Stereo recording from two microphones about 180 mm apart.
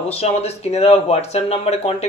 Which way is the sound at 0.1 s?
35° left (ahead or behind).